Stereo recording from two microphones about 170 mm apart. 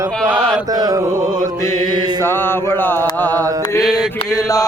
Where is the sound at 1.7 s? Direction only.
25° right (ahead or behind).